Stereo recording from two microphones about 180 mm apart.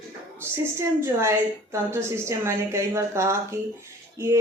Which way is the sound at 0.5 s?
15° right (ahead or behind).